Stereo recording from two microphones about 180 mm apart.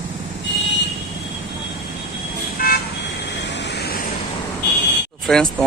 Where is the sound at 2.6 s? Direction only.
55° left (ahead or behind).